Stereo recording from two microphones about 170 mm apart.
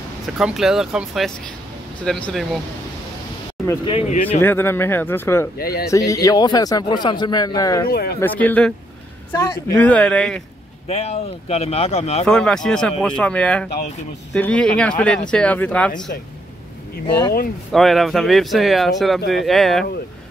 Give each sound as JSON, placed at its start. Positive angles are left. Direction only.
{"t": 0.4, "sound": "speech", "side_deg": 0}
{"t": 3.6, "sound": "speech", "side_deg": 30}
{"t": 4.4, "sound": "speech", "side_deg": 10}
{"t": 5.6, "sound": "speech", "side_deg": 65}
{"t": 5.9, "sound": "speech", "side_deg": 20}
{"t": 7.9, "sound": "speech", "side_deg": 65}
{"t": 8.2, "sound": "speech", "side_deg": 10}
{"t": 9.3, "sound": "speech", "side_deg": 20}
{"t": 9.8, "sound": "speech", "side_deg": 10}
{"t": 10.9, "sound": "speech", "side_deg": 40}
{"t": 12.3, "sound": "speech", "side_deg": 5}
{"t": 17.7, "sound": "speech", "side_deg": 0}